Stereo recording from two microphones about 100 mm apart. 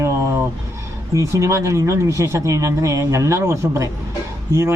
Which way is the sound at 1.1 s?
30° right (ahead or behind).